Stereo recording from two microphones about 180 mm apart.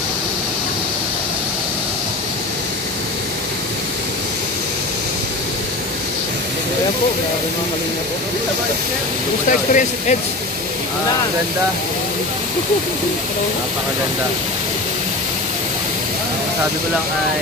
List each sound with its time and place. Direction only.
9.5 s speech: 45° left (ahead or behind)